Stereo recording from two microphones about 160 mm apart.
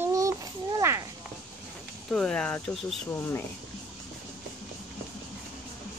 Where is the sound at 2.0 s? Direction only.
5° left (ahead or behind).